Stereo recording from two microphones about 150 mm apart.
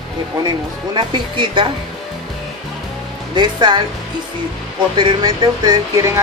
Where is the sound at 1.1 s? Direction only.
35° right (ahead or behind).